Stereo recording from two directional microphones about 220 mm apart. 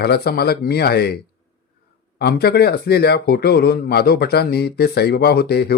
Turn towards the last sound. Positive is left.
turn(degrees=45)  # may be behind; listen again after turning